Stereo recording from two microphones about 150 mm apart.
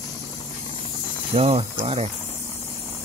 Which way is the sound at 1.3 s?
40° right (ahead or behind).